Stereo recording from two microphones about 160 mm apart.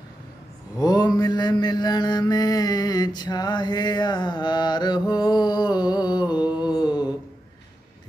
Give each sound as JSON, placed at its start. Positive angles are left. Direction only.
{"t": 0.7, "sound": "mantra", "side_deg": 25}